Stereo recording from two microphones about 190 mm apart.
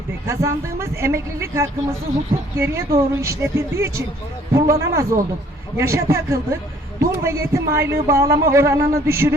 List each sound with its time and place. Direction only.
0.3 s speech: 15° right (ahead or behind)